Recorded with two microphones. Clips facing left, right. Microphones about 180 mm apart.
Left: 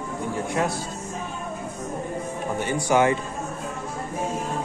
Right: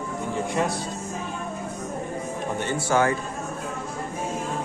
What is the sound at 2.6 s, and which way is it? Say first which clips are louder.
Speech: left 2 dB; 15° left (ahead or behind).